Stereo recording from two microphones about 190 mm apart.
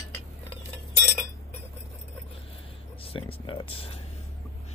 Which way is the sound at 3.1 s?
30° left (ahead or behind).